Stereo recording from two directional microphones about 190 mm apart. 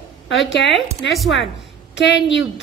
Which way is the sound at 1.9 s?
65° left (ahead or behind).